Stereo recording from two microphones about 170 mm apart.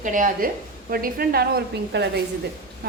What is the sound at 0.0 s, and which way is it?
A woman's voice, 50° right (ahead or behind).